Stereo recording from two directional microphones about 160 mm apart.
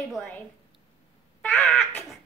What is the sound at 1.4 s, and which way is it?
Crow, 10° left (ahead or behind).